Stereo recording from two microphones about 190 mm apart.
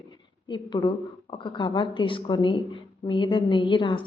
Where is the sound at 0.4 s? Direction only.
25° left (ahead or behind).